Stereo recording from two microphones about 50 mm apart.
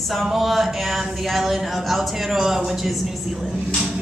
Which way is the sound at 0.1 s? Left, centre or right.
Centre.